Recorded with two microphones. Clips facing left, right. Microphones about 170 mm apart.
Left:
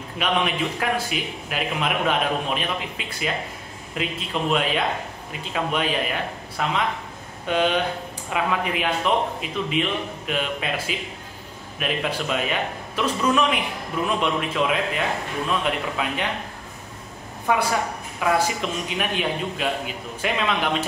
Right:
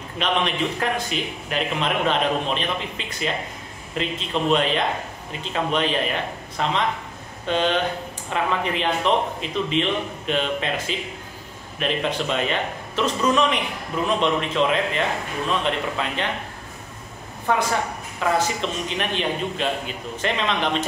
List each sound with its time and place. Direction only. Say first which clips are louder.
0.2 s a man's voice: even; 5° left (ahead or behind)
17.5 s a man's voice: even; 10° left (ahead or behind)